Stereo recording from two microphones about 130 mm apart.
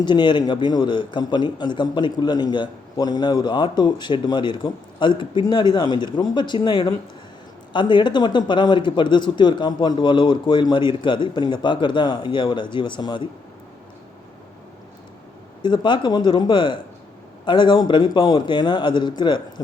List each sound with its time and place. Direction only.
0.0 s a man's voice: 35° left (ahead or behind)
15.6 s a man's voice: 35° left (ahead or behind)